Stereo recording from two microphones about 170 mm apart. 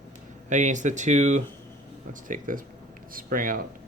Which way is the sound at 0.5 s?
45° right (ahead or behind).